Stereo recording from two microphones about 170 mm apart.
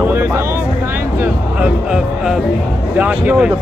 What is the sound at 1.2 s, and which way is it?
Speech, 5° right (ahead or behind).